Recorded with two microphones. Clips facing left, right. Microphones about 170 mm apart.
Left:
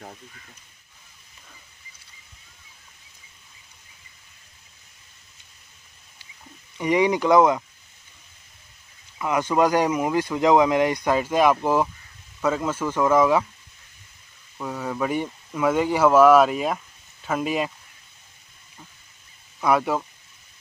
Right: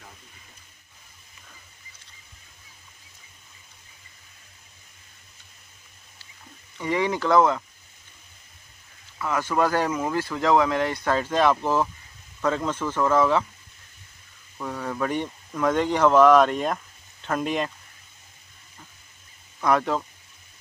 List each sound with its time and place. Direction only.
6.8 s speech: 15° left (ahead or behind)
9.2 s speech: 15° left (ahead or behind)
14.6 s speech: 10° left (ahead or behind)
19.6 s speech: 10° left (ahead or behind)